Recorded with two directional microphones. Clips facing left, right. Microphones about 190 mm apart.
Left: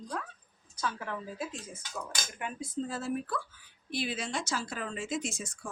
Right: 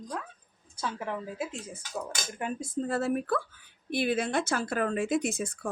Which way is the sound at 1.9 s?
40° right (ahead or behind).